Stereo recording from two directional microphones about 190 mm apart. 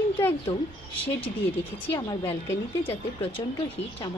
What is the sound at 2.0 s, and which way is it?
A woman's voice, 20° left (ahead or behind).